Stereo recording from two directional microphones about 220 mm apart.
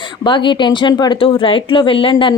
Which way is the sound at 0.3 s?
20° left (ahead or behind).